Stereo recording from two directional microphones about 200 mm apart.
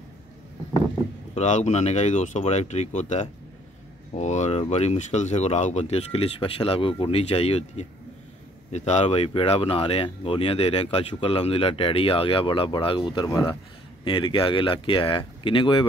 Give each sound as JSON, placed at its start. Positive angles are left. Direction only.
{"t": 1.3, "sound": "speech", "side_deg": 35}